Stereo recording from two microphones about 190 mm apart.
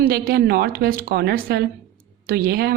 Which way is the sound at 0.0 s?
50° right (ahead or behind).